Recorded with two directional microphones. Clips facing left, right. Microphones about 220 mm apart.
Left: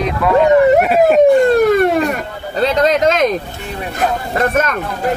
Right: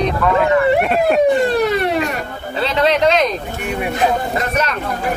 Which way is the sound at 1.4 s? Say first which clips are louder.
Left 5 dB; 50° left (ahead or behind).